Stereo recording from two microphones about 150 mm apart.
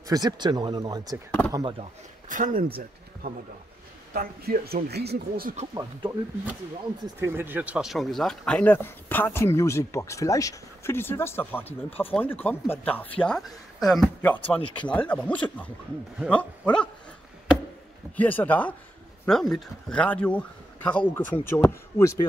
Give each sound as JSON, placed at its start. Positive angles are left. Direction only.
{"t": 0.1, "sound": "speech", "side_deg": -30}
{"t": 2.2, "sound": "speech", "side_deg": -60}
{"t": 3.2, "sound": "speech", "side_deg": -80}
{"t": 5.8, "sound": "a man's voice", "side_deg": -15}
{"t": 18.1, "sound": "speech", "side_deg": 10}